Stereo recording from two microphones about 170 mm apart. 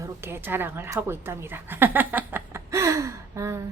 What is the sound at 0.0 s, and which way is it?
A woman's voice, 15° right (ahead or behind).